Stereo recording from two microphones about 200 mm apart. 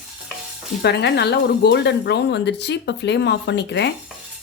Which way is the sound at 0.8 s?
55° left (ahead or behind).